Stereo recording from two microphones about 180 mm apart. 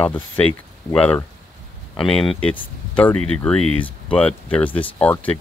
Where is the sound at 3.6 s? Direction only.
35° left (ahead or behind).